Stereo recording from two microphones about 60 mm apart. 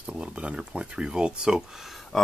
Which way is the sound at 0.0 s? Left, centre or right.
Centre.